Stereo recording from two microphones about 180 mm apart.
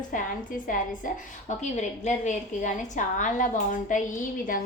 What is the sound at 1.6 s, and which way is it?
A woman's voice, 40° left (ahead or behind).